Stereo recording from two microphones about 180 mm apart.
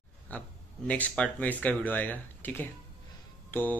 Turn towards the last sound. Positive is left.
turn(degrees=10)  # may be behind; listen again after turning